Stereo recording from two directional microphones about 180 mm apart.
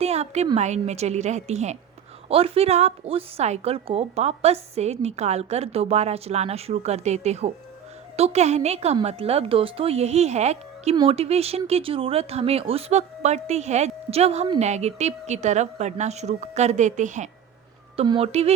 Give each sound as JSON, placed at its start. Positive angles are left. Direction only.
{"t": 0.0, "sound": "a woman's voice", "side_deg": -35}
{"t": 17.9, "sound": "a woman's voice", "side_deg": -30}